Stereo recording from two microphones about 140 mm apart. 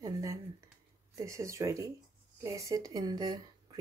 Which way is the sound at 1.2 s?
20° right (ahead or behind).